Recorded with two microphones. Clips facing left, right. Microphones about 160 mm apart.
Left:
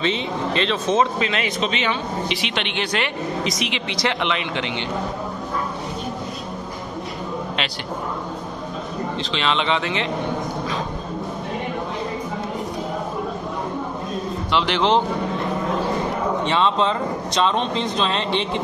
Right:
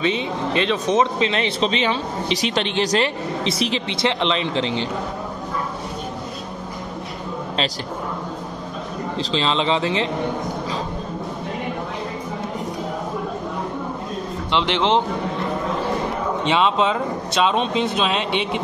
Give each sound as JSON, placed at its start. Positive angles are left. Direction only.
{"t": 0.0, "sound": "speech", "side_deg": -15}
{"t": 1.2, "sound": "speech", "side_deg": -30}
{"t": 9.2, "sound": "speech", "side_deg": -30}
{"t": 14.5, "sound": "a man's voice", "side_deg": -25}
{"t": 16.4, "sound": "speech", "side_deg": -15}